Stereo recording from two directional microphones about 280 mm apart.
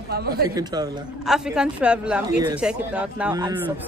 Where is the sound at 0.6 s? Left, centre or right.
Centre.